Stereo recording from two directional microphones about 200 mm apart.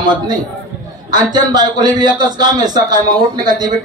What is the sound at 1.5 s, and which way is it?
A man's voice, 20° right (ahead or behind).